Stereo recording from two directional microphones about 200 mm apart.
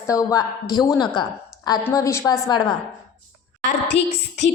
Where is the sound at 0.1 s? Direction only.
15° left (ahead or behind).